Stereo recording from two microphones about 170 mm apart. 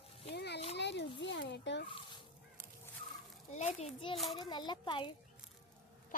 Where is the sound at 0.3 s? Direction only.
80° left.